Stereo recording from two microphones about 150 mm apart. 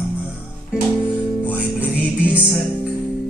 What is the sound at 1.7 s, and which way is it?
Music, 10° right (ahead or behind).